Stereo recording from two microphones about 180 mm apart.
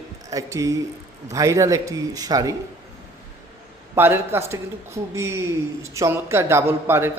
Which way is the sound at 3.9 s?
10° right (ahead or behind).